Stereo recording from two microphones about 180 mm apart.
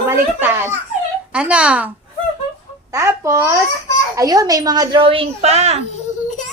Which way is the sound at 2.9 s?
15° right (ahead or behind).